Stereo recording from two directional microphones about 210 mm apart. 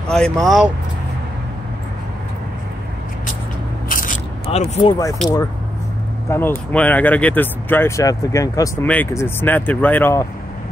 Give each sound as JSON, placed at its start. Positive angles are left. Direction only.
{"t": 0.1, "sound": "speech", "side_deg": 0}
{"t": 3.9, "sound": "scrape", "side_deg": 40}
{"t": 6.3, "sound": "speech", "side_deg": 10}